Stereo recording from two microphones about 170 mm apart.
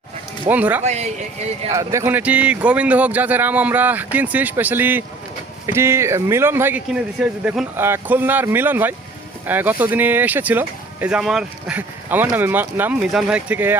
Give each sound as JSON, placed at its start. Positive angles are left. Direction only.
{"t": 0.4, "sound": "speech", "side_deg": -10}
{"t": 0.9, "sound": "speech", "side_deg": -40}
{"t": 1.7, "sound": "speech", "side_deg": -20}